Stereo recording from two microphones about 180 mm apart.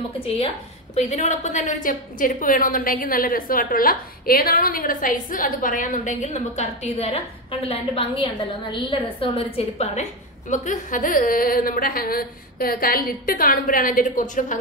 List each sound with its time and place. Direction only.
0.9 s a woman's voice: 40° left (ahead or behind)